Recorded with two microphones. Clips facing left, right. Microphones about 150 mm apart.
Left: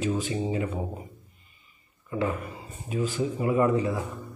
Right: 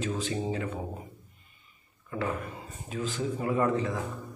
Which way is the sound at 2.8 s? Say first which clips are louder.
Left 4 dB; 10° left (ahead or behind).